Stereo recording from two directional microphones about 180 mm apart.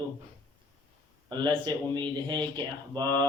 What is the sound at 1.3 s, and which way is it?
Speech, 25° right (ahead or behind).